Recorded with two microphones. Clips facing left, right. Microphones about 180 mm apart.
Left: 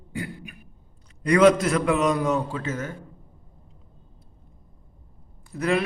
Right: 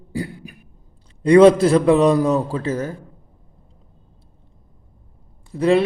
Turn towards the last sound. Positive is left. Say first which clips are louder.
# right 8 dB
turn(degrees=-30)  # may be behind; listen again after turning